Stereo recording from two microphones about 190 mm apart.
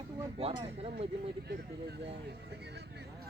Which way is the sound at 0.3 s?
30° right (ahead or behind).